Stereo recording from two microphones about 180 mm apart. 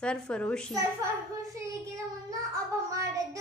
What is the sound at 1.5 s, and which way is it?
Child singing, 20° right (ahead or behind).